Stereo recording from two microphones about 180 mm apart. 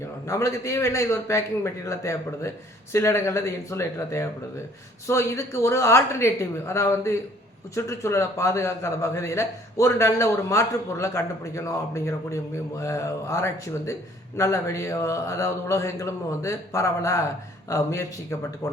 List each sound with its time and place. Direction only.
0.3 s a man's voice: 15° left (ahead or behind)